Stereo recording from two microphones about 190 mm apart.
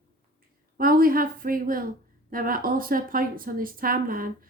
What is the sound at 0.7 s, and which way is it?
Speech, 50° right (ahead or behind).